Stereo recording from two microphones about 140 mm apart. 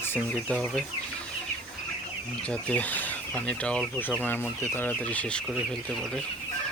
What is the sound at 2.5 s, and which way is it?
Speech, 10° left (ahead or behind).